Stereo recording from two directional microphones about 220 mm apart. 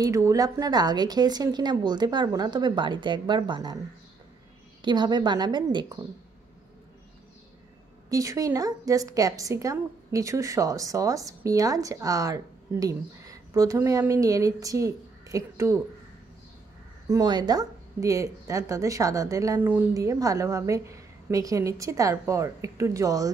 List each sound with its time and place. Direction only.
0.0 s a woman's voice: 15° right (ahead or behind)
4.8 s a woman's voice: 20° right (ahead or behind)
8.1 s a woman's voice: 15° right (ahead or behind)
17.1 s a woman's voice: 20° right (ahead or behind)